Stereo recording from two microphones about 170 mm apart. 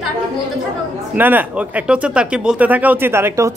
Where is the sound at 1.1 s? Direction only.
10° right (ahead or behind).